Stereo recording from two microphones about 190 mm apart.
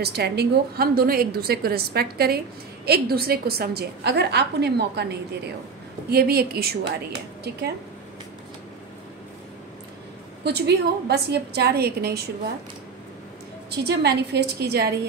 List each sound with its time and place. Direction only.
0.0 s a woman's voice: 60° right (ahead or behind)
10.4 s a woman's voice: 60° right (ahead or behind)
13.7 s a woman's voice: 60° right (ahead or behind)